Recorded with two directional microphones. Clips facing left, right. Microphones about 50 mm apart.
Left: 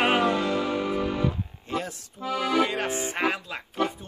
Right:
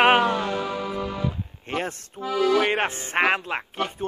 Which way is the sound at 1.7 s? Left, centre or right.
Right.